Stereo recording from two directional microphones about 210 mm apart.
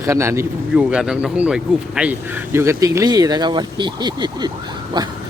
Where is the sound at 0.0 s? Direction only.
15° right (ahead or behind).